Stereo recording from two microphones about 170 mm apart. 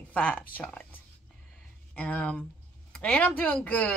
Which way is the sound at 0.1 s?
10° left (ahead or behind).